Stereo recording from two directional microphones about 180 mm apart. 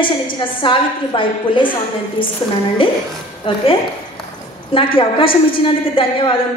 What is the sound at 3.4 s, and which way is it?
Speech, 30° left (ahead or behind).